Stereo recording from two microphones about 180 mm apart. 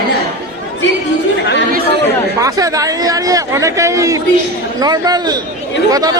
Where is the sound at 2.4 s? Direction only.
20° right (ahead or behind).